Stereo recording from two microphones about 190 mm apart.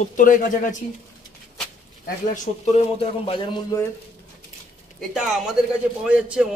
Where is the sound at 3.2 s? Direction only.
25° left (ahead or behind).